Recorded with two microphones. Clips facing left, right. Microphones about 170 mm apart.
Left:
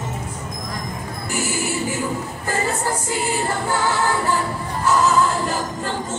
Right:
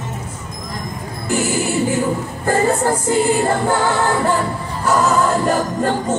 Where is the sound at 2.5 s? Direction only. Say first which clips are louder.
Right 7 dB; 55° right (ahead or behind).